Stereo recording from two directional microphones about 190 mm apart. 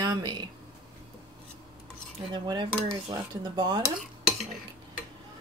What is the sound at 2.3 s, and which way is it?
Speech, 25° right (ahead or behind).